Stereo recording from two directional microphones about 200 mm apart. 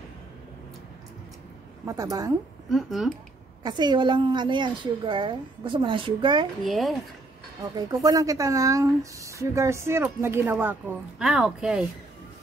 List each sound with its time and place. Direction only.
1.9 s speech: 15° right (ahead or behind)
2.7 s speech: centre (ahead or behind)
3.6 s a woman's voice: 20° right (ahead or behind)
6.6 s speech: centre (ahead or behind)
7.7 s speech: 20° right (ahead or behind); by 11.8 s centre (ahead or behind)